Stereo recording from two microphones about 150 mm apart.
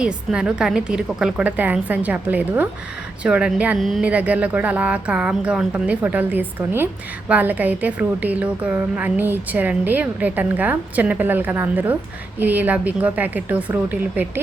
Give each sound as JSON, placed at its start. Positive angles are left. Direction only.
{"t": 0.0, "sound": "a woman's voice", "side_deg": -5}